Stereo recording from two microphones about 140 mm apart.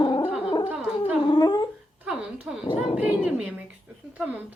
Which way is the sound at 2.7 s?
45° left (ahead or behind).